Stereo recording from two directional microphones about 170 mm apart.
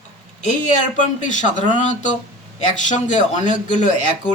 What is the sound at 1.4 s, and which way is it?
A man's voice, 45° left (ahead or behind).